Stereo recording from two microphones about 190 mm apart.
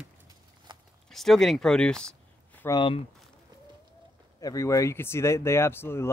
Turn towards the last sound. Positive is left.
turn(degrees=10)  # may be behind; listen again after turning